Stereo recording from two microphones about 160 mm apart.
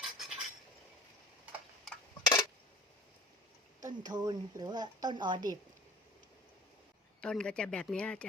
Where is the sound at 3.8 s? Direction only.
25° right (ahead or behind).